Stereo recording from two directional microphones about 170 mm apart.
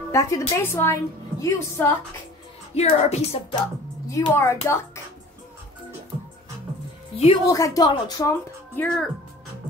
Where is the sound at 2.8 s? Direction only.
35° left (ahead or behind).